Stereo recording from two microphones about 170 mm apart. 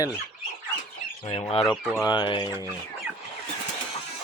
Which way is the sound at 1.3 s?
35° left (ahead or behind).